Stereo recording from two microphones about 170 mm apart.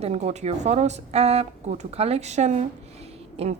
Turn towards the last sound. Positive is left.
turn(degrees=-35)  # may be behind; listen again after turning